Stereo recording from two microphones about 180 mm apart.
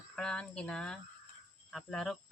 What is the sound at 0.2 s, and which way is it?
Speech, 5° left (ahead or behind).